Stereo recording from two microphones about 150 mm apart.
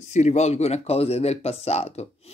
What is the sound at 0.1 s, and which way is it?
Speech, 50° left (ahead or behind).